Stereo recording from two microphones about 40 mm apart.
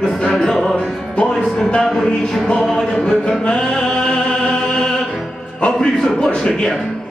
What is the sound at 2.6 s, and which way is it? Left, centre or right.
Speech, centre.